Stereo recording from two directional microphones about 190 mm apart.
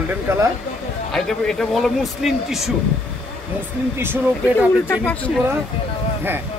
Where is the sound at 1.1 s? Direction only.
Centre (ahead or behind).